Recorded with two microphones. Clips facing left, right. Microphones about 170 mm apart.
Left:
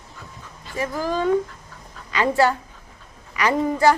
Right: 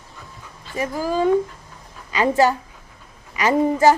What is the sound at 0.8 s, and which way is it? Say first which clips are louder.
Speech: right 2 dB; 10° right (ahead or behind).